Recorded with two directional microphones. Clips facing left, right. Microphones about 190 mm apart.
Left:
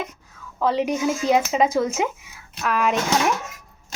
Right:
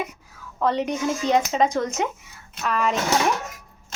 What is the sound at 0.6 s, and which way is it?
Speech, 5° left (ahead or behind).